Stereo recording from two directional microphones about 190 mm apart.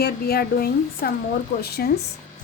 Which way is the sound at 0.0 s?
55° left (ahead or behind).